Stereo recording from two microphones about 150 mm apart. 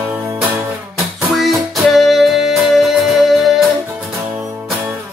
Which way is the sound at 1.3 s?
Centre (ahead or behind).